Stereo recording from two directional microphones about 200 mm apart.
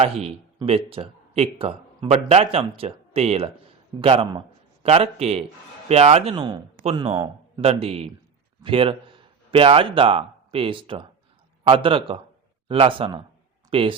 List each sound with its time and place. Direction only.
0.0 s a man's voice: 30° right (ahead or behind)